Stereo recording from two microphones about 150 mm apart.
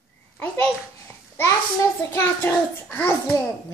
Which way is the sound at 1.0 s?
20° left (ahead or behind).